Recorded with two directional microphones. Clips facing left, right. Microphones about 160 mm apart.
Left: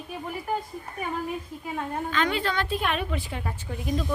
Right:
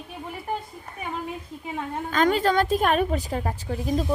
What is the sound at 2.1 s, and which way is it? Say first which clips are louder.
A woman's voice: right 7 dB; 45° right (ahead or behind).